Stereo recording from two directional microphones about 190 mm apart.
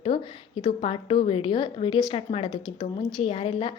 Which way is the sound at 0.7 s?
30° left (ahead or behind).